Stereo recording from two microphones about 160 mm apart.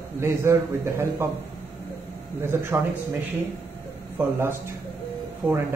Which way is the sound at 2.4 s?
15° right (ahead or behind).